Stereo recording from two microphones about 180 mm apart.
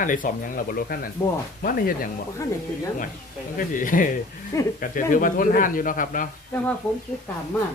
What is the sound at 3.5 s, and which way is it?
Speech, 50° left (ahead or behind).